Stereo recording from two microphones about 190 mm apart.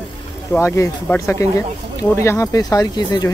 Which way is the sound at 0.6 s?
15° left (ahead or behind).